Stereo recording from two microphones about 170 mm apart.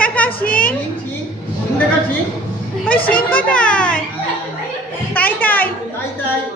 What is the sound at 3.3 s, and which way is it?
Speech, 10° left (ahead or behind).